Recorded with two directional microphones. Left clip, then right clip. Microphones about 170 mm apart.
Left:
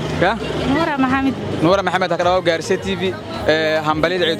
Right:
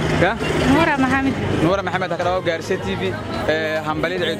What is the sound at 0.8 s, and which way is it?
Speech, 25° left (ahead or behind).